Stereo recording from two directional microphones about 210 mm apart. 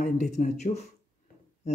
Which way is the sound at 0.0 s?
35° left (ahead or behind).